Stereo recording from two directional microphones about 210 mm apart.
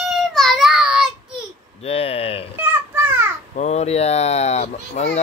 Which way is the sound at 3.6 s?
30° left (ahead or behind).